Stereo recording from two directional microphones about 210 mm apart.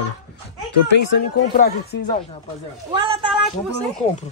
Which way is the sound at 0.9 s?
50° left (ahead or behind).